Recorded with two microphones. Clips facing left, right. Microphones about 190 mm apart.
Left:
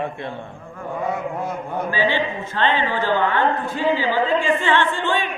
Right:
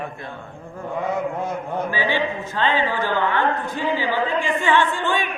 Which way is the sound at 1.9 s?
15° right (ahead or behind).